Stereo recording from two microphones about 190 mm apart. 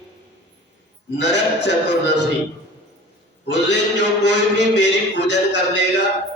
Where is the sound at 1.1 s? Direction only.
65° left (ahead or behind).